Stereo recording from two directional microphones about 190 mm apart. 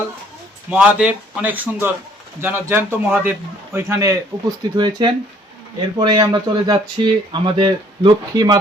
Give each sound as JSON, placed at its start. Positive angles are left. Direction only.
{"t": 0.7, "sound": "a man's voice", "side_deg": -5}